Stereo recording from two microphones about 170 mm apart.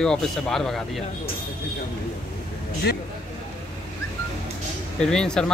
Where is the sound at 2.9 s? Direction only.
70° left (ahead or behind).